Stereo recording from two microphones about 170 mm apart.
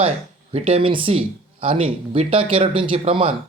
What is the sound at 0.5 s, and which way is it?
Speech, 35° right (ahead or behind).